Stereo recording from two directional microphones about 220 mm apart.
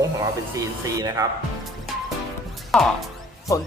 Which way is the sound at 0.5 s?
15° right (ahead or behind).